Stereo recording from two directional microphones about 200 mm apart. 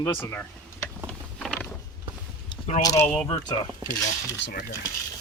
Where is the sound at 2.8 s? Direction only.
15° left (ahead or behind).